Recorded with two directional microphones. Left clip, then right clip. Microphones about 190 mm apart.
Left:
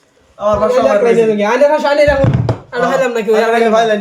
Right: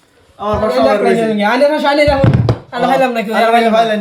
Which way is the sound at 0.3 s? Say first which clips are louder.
Left 2 dB; 20° left (ahead or behind).